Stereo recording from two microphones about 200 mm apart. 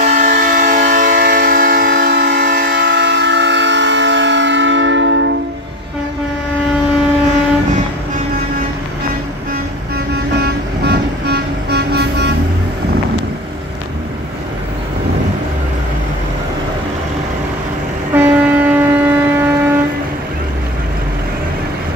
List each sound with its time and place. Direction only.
0.0 s train: 40° right (ahead or behind); by 5.3 s 65° right (ahead or behind)
9.9 s music: 55° right (ahead or behind)
18.1 s a sound: 10° right (ahead or behind)